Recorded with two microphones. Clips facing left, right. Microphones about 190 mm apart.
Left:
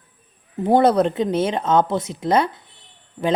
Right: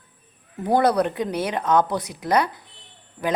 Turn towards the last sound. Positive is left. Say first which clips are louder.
# left 4 dB
turn(degrees=20)  # may be behind; listen again after turning